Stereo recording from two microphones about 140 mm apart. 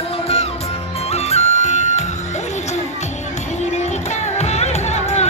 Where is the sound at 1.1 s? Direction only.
50° left (ahead or behind).